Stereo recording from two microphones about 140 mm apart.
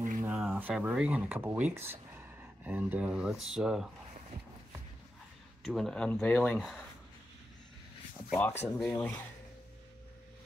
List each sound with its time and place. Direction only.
0.3 s speech: 10° right (ahead or behind)
5.6 s speech: centre (ahead or behind)
8.4 s speech: 15° left (ahead or behind)